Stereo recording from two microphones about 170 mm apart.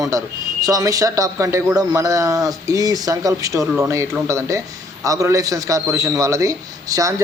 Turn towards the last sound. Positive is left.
turn(degrees=-20)  # may be behind; listen again after turning